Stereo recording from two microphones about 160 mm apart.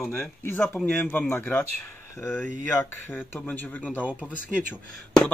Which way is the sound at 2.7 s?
10° left (ahead or behind).